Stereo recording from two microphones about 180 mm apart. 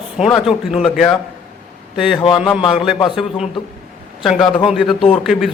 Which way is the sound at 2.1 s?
25° left (ahead or behind).